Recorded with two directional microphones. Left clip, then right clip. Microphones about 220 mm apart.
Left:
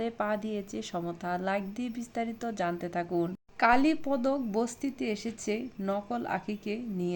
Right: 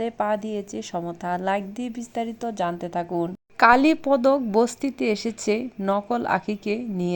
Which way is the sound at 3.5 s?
30° right (ahead or behind).